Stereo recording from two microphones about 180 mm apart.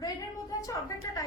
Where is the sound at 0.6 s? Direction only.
20° left (ahead or behind).